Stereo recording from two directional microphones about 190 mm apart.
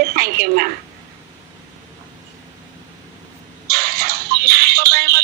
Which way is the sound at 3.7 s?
55° right (ahead or behind).